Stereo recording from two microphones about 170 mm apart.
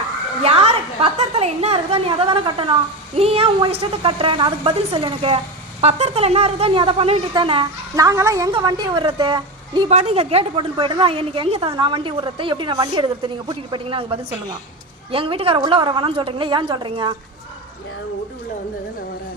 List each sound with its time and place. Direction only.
0.4 s a woman's voice: 35° right (ahead or behind)